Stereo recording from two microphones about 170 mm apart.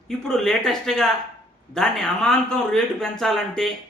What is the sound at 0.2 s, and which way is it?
A man's voice, 5° left (ahead or behind).